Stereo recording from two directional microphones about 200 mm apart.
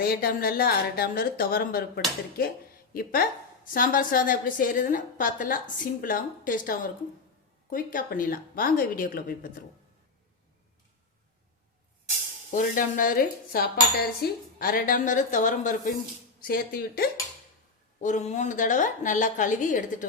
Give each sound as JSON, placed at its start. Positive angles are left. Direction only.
{"t": 0.0, "sound": "a woman's voice", "side_deg": 50}
{"t": 2.9, "sound": "a woman's voice", "side_deg": 45}
{"t": 12.5, "sound": "a woman's voice", "side_deg": 45}
{"t": 18.0, "sound": "a woman's voice", "side_deg": 35}